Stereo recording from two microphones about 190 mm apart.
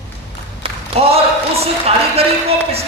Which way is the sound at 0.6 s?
30° right (ahead or behind).